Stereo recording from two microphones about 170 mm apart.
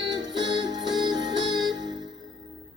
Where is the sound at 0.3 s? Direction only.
90° right.